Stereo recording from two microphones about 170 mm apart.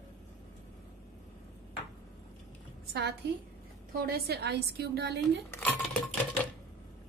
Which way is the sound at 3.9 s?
65° right (ahead or behind).